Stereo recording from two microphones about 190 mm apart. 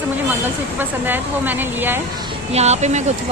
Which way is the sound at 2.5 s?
35° right (ahead or behind).